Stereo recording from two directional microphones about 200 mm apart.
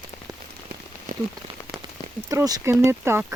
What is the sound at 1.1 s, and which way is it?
Rain on surface, 40° right (ahead or behind).